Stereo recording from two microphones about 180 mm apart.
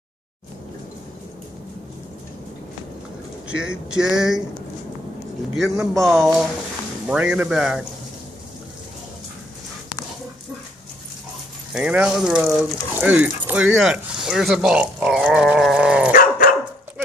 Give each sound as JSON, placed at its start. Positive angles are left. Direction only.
{"t": 3.4, "sound": "speech", "side_deg": -5}
{"t": 5.6, "sound": "speech", "side_deg": 0}
{"t": 11.7, "sound": "speech", "side_deg": -5}
{"t": 16.1, "sound": "dog", "side_deg": 50}